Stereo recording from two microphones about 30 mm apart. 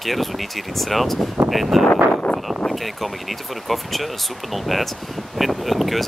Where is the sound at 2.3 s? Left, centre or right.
Left.